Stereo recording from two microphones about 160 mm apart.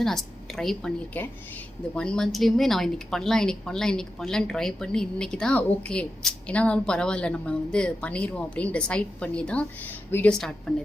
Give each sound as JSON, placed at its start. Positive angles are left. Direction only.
{"t": 0.0, "sound": "a woman's voice", "side_deg": 0}